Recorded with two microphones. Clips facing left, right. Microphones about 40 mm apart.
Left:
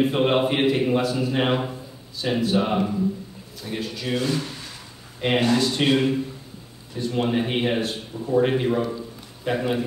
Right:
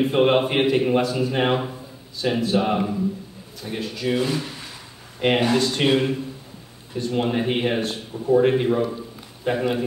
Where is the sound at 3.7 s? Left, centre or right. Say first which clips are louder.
Right 2 dB; centre.